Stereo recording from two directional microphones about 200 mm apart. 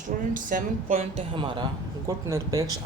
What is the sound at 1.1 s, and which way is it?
A man's voice, 25° right (ahead or behind).